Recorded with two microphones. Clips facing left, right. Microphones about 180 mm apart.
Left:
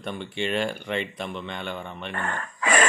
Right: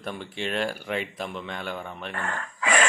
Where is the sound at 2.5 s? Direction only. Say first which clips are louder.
Left 1 dB; 45° left (ahead or behind).